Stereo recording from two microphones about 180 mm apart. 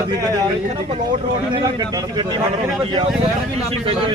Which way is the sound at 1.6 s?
20° right (ahead or behind).